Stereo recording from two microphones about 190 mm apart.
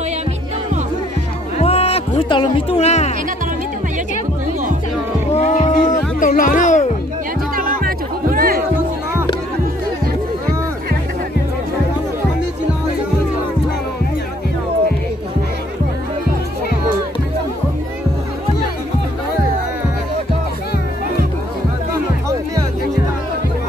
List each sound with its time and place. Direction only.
1.6 s music: 30° left (ahead or behind)
5.3 s music: 35° left (ahead or behind)
7.5 s music: 50° right (ahead or behind)